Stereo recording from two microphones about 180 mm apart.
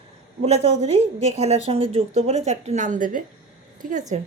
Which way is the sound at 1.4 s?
35° right (ahead or behind).